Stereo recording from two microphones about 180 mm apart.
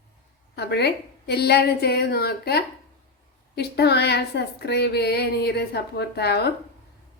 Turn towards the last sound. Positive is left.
turn(degrees=65)  # may be behind; listen again after turning